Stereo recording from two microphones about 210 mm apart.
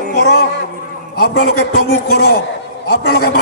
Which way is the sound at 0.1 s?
50° left (ahead or behind).